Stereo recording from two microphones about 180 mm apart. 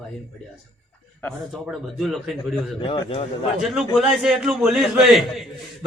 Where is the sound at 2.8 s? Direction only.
30° left (ahead or behind).